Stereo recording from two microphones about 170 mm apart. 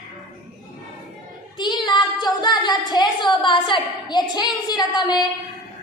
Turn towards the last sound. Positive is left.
turn(degrees=25)  # may be behind; listen again after turning